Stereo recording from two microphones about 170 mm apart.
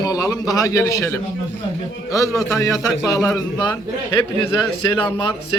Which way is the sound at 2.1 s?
20° left (ahead or behind).